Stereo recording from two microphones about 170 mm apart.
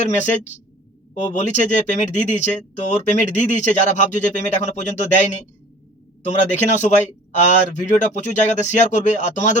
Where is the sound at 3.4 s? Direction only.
45° left (ahead or behind).